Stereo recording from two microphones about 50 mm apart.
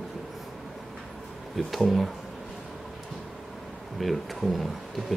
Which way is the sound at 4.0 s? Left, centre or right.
Centre.